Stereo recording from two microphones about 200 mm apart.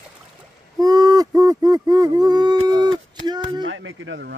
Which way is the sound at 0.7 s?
20° right (ahead or behind).